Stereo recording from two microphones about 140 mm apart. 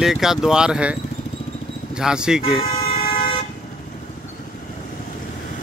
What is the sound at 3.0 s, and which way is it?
Vehicle, 80° left.